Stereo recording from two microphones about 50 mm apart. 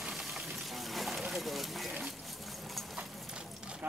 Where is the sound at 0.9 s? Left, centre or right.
Centre.